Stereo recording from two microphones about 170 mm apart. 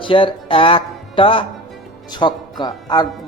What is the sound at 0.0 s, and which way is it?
A man's voice, 30° left (ahead or behind).